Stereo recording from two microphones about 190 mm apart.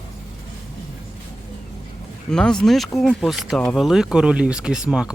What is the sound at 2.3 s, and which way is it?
Speech, 5° left (ahead or behind).